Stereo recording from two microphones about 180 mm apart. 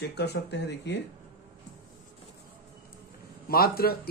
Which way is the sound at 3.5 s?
55° left (ahead or behind).